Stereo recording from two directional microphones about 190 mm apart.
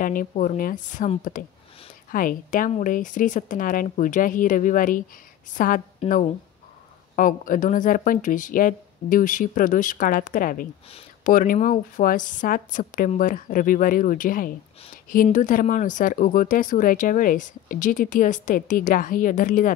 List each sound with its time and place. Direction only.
0.0 s speech: 45° left (ahead or behind)